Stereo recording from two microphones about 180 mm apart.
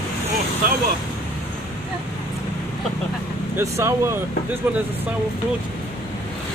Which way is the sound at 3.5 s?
15° right (ahead or behind).